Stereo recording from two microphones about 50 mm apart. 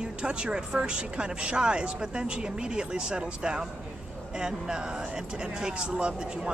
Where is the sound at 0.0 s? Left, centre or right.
Centre.